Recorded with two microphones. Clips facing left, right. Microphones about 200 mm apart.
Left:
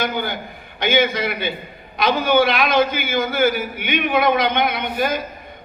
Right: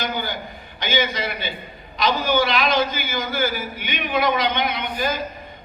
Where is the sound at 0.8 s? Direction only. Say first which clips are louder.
Left 5 dB; 55° left (ahead or behind).